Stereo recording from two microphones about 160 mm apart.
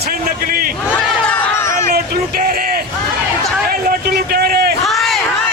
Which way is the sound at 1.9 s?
65° right (ahead or behind).